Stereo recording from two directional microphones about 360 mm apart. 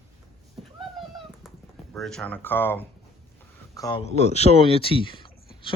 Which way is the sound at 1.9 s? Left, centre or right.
Centre.